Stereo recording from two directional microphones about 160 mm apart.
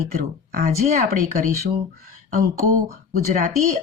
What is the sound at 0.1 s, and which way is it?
Speech, 65° right (ahead or behind).